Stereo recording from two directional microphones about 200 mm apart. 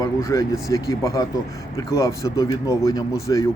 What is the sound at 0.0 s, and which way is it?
Speech, 15° left (ahead or behind).